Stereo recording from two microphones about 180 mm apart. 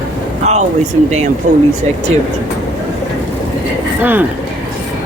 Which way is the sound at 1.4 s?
40° right (ahead or behind).